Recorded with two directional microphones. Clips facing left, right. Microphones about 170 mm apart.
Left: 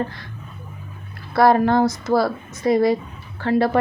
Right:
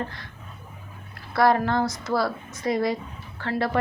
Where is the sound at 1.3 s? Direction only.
30° left (ahead or behind).